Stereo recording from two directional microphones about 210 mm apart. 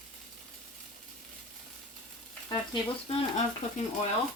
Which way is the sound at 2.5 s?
25° left (ahead or behind).